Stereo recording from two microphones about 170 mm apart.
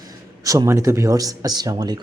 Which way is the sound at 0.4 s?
20° right (ahead or behind).